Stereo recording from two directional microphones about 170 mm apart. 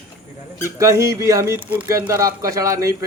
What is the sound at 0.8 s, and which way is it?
Speech, 20° right (ahead or behind).